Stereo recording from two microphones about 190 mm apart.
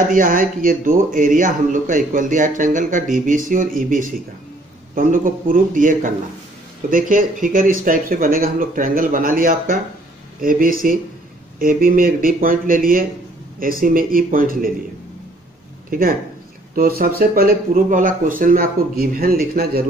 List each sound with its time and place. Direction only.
0.1 s a man's voice: 45° right (ahead or behind)
15.9 s a man's voice: 50° right (ahead or behind)